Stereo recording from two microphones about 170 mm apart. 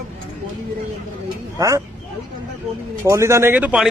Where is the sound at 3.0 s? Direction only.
15° right (ahead or behind).